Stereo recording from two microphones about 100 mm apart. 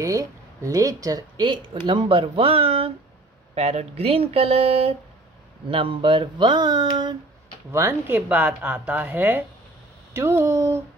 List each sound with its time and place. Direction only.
0.0 s speech: 35° right (ahead or behind); by 2.9 s 75° right (ahead or behind)
3.5 s speech: 90° right
5.7 s speech: 60° right (ahead or behind)
7.7 s speech: 20° right (ahead or behind)